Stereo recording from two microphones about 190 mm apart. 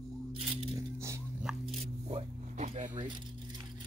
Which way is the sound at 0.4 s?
30° right (ahead or behind).